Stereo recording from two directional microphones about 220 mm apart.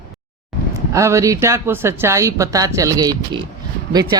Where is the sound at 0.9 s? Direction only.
15° right (ahead or behind).